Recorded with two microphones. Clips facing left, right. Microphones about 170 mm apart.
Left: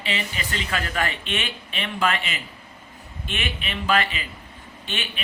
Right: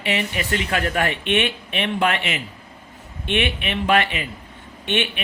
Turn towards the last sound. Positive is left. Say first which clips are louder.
# right 9 dB
turn(degrees=-65)  # may be behind; listen again after turning